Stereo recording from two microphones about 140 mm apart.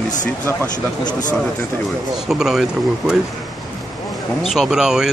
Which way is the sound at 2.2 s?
5° right (ahead or behind).